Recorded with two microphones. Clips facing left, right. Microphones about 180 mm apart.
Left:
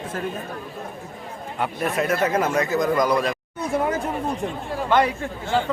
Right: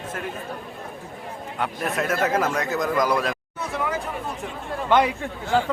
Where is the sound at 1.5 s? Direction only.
Centre (ahead or behind).